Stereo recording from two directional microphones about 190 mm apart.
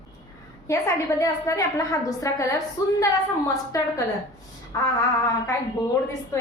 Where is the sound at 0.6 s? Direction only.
15° left (ahead or behind).